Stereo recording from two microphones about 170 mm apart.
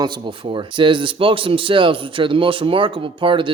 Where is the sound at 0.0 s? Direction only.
25° right (ahead or behind).